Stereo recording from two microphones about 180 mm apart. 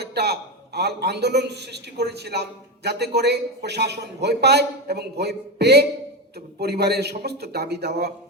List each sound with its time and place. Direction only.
0.0 s a man's voice: 65° right (ahead or behind)